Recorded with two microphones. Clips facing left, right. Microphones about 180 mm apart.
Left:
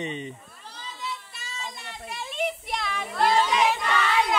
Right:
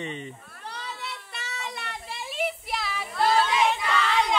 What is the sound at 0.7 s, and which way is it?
Children playing, 70° right (ahead or behind).